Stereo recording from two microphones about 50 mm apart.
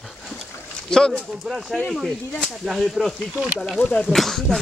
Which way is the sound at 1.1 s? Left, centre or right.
Centre.